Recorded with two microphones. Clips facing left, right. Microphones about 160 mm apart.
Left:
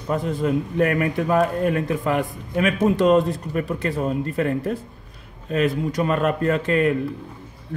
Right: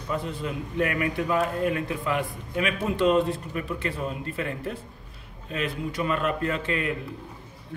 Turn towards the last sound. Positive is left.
turn(degrees=45)  # may be behind; listen again after turning